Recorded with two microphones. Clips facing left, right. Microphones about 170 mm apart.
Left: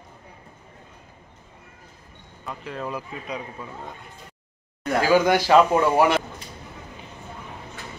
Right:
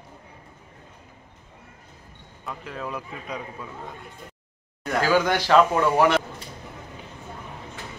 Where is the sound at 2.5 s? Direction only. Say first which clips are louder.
Left 2 dB; centre (ahead or behind).